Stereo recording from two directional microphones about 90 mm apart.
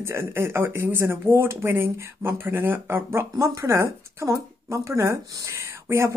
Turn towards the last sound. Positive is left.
turn(degrees=-30)  # may be behind; listen again after turning